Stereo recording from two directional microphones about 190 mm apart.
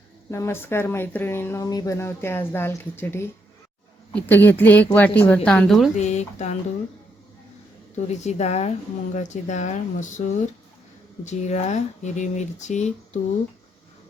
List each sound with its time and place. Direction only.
0.3 s a woman's voice: 15° left (ahead or behind)
6.0 s speech: 35° left (ahead or behind)
7.9 s speech: 35° left (ahead or behind)